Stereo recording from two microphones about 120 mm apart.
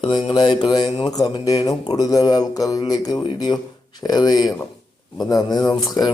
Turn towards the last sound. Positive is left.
turn(degrees=35)  # may be behind; listen again after turning